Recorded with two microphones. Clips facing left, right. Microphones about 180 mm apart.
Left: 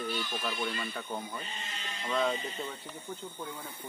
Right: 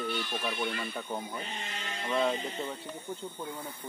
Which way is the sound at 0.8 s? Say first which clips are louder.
Right 1 dB; 10° right (ahead or behind).